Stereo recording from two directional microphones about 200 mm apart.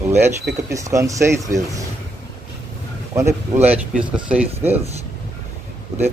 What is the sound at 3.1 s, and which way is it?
Speech, 15° right (ahead or behind).